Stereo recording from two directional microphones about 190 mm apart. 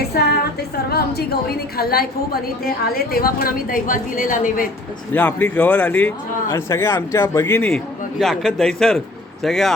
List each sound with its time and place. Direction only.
0.0 s a sound: 55° left (ahead or behind)
0.9 s a woman's voice: 55° left (ahead or behind)
5.1 s a man's voice: 10° left (ahead or behind)
8.2 s a man's voice: centre (ahead or behind)